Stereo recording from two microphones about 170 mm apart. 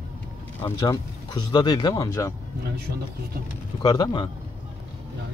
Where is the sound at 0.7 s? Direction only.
25° left (ahead or behind).